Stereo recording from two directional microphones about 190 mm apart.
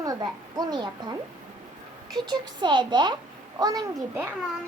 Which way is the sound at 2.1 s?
20° right (ahead or behind).